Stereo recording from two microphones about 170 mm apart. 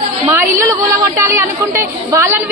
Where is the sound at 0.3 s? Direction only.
15° right (ahead or behind).